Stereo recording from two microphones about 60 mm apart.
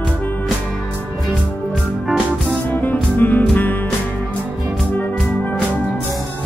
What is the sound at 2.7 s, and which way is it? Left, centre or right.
Music, left.